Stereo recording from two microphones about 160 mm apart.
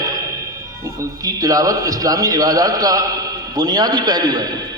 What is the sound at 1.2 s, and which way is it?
A man's voice, 20° right (ahead or behind).